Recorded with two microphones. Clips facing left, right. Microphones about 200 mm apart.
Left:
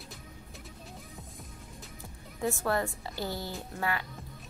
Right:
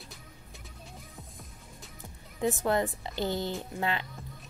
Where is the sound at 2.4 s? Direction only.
20° right (ahead or behind).